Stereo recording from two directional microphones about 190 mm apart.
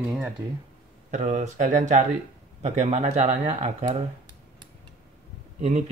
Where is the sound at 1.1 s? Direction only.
40° right (ahead or behind).